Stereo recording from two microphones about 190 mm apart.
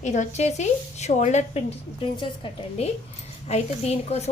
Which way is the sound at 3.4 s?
35° left (ahead or behind).